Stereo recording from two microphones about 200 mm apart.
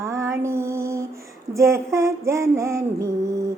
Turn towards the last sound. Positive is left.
turn(degrees=-15)  # may be behind; listen again after turning